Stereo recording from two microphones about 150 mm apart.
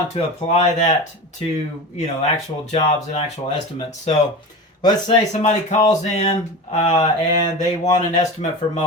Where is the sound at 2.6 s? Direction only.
45° left (ahead or behind).